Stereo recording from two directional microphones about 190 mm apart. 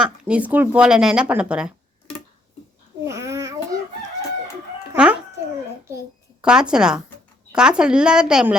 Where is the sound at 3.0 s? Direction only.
15° right (ahead or behind).